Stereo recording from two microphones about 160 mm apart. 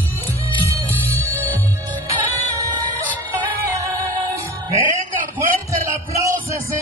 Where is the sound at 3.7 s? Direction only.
20° right (ahead or behind).